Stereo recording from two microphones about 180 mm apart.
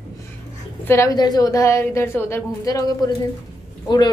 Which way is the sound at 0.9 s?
15° left (ahead or behind).